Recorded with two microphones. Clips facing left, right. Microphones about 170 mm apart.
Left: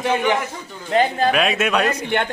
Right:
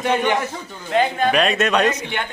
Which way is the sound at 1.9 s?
60° left (ahead or behind).